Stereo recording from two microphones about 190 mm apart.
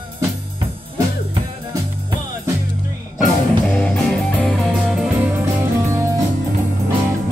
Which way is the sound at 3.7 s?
5° left (ahead or behind).